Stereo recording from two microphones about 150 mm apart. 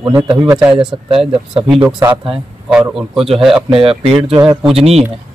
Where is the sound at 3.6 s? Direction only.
40° right (ahead or behind).